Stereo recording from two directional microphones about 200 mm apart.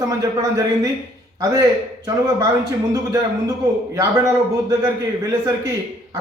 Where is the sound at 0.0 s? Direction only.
15° right (ahead or behind).